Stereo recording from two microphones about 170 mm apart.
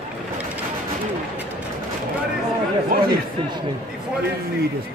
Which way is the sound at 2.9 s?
55° right (ahead or behind).